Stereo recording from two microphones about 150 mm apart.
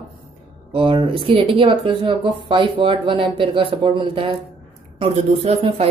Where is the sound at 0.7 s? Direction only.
35° right (ahead or behind).